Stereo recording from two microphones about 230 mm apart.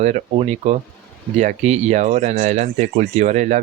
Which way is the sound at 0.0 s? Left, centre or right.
Right.